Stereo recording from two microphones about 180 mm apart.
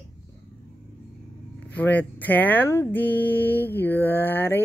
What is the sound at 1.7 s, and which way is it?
Speech, 10° left (ahead or behind).